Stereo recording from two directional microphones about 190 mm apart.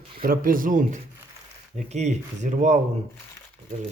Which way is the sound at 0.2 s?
50° right (ahead or behind).